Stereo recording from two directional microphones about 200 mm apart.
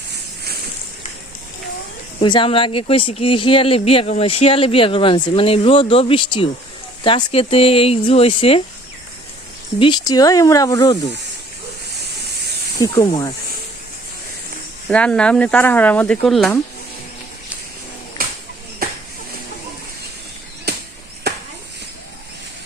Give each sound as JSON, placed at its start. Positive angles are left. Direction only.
{"t": 2.2, "sound": "speech", "side_deg": 25}
{"t": 9.7, "sound": "speech", "side_deg": 25}
{"t": 12.8, "sound": "speech", "side_deg": 15}
{"t": 14.8, "sound": "speech", "side_deg": 5}
{"t": 18.2, "sound": "a sound", "side_deg": -45}
{"t": 20.7, "sound": "a sound", "side_deg": -55}